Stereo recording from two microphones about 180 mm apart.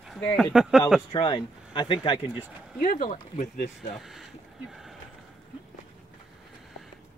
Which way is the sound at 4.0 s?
Centre (ahead or behind).